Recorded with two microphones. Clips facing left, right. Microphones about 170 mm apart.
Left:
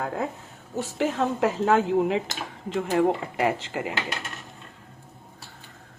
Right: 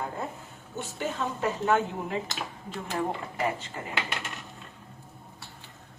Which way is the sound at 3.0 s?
75° left (ahead or behind).